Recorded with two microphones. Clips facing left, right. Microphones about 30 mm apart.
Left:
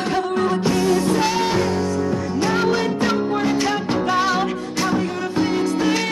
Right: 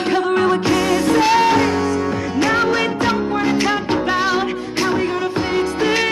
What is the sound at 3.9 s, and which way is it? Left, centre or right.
Music, centre.